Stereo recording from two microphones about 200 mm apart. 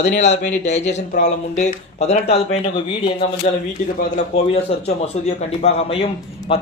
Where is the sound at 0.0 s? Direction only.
35° left (ahead or behind).